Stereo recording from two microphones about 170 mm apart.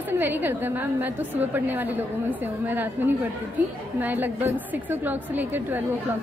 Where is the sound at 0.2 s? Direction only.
10° right (ahead or behind).